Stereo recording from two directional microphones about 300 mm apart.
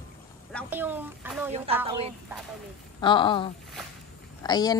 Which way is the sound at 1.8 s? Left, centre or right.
Centre.